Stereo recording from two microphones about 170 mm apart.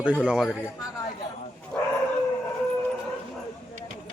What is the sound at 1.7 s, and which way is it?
Dog, 5° left (ahead or behind).